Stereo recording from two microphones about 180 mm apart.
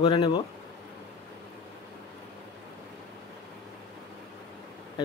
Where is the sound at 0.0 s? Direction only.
25° left (ahead or behind).